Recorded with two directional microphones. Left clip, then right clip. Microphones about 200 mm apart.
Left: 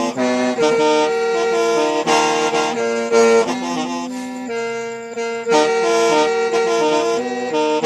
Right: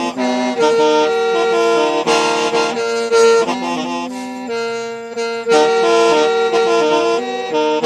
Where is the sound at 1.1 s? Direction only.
35° right (ahead or behind).